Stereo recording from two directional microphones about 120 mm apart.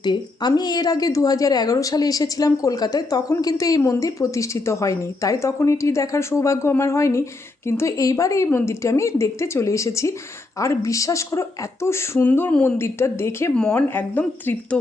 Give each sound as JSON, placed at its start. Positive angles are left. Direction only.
{"t": 0.0, "sound": "a woman's voice", "side_deg": 40}